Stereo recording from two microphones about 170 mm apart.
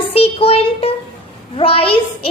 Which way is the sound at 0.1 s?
35° left (ahead or behind).